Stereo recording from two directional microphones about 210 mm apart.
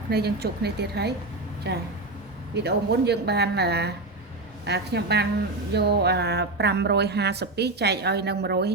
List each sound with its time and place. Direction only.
0.1 s speech: 50° right (ahead or behind)